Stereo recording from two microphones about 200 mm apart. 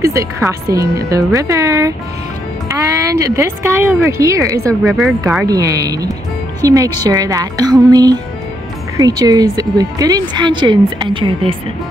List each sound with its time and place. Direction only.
0.0 s speech: 15° right (ahead or behind)
4.8 s speech: centre (ahead or behind)
5.5 s a woman's voice: 15° right (ahead or behind)